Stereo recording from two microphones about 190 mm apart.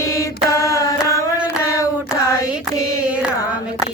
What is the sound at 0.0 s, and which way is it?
Mantra, 15° left (ahead or behind).